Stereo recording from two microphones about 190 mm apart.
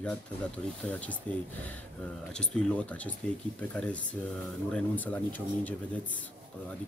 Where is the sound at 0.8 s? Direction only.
5° left (ahead or behind).